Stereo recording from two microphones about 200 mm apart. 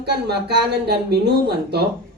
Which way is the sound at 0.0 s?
55° right (ahead or behind).